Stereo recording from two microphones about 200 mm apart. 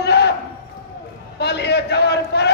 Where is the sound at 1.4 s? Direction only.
55° left (ahead or behind).